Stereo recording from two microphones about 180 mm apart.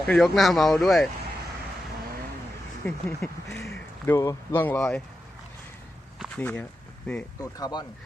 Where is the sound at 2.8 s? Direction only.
5° left (ahead or behind).